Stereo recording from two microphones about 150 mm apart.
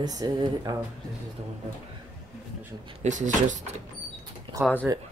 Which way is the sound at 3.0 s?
55° right (ahead or behind).